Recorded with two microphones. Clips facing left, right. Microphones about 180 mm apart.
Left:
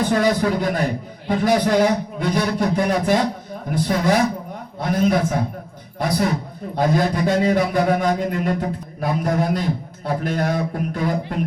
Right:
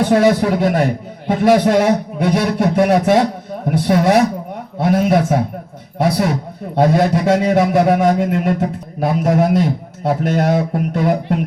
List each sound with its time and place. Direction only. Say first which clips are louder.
0.0 s a man's voice: right 5 dB; 70° right (ahead or behind)